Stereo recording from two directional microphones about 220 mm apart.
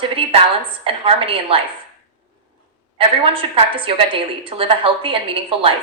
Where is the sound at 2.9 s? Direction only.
25° right (ahead or behind).